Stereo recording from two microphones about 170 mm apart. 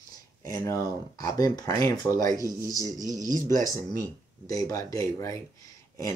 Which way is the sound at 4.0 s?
20° left (ahead or behind).